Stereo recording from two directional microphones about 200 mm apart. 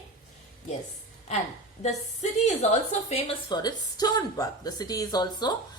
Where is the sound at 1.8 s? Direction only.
30° left (ahead or behind).